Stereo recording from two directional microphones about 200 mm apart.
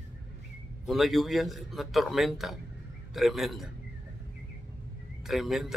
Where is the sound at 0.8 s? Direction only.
Centre (ahead or behind).